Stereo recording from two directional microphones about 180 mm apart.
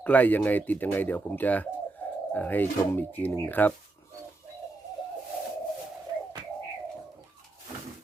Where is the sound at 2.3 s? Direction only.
10° left (ahead or behind).